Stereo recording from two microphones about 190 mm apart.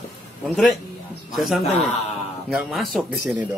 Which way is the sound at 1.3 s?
Centre (ahead or behind).